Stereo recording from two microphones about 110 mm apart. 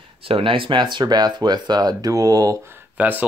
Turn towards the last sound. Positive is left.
turn(degrees=-15)  # may be behind; listen again after turning